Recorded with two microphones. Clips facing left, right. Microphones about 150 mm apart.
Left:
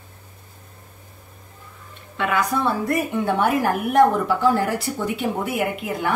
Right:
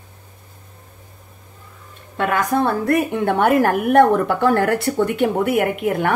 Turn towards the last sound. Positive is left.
turn(degrees=-60)  # may be behind; listen again after turning